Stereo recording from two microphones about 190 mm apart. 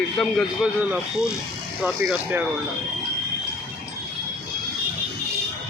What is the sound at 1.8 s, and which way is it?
Speech, 5° right (ahead or behind).